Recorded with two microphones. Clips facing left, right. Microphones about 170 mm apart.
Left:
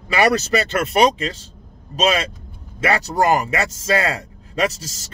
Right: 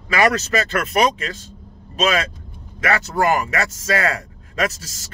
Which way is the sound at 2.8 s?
30° left (ahead or behind).